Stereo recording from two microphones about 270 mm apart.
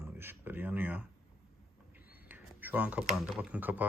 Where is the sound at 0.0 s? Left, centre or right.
Centre.